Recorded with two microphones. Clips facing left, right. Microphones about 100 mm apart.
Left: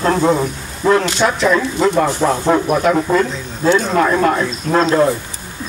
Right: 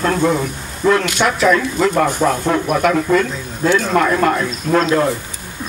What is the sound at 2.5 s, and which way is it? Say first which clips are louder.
Speech: left 2 dB; 35° left (ahead or behind).